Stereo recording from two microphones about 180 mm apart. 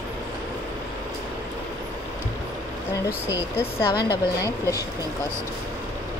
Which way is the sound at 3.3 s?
20° left (ahead or behind).